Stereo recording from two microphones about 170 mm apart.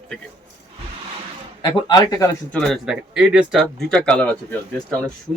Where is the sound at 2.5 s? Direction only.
Centre (ahead or behind).